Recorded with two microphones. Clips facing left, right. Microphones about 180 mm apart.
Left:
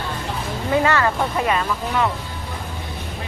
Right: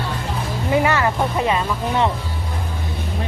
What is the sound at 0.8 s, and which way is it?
Music, 15° right (ahead or behind).